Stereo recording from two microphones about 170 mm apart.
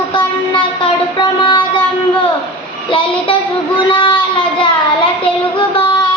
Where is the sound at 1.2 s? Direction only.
30° left (ahead or behind).